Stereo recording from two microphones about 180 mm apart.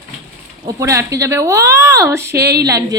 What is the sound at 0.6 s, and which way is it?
A woman's voice, 15° right (ahead or behind).